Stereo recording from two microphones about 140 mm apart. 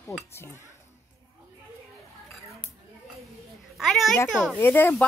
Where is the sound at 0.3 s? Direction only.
20° left (ahead or behind).